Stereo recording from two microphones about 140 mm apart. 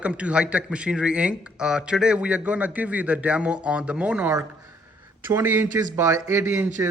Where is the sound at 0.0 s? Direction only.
10° right (ahead or behind).